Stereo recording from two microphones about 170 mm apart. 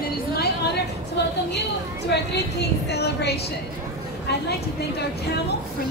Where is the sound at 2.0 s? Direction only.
75° left (ahead or behind).